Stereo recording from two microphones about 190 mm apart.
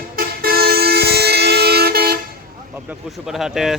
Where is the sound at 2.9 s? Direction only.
Centre (ahead or behind).